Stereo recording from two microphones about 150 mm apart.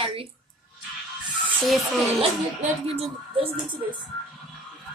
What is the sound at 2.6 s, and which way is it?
Speech, 40° right (ahead or behind).